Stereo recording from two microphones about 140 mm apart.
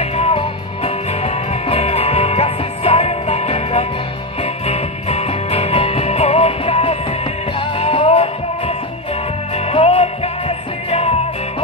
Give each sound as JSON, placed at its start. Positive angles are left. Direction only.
{"t": 0.2, "sound": "music", "side_deg": 40}